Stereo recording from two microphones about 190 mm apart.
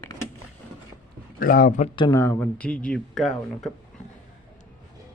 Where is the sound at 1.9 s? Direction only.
20° left (ahead or behind); by 3.7 s centre (ahead or behind).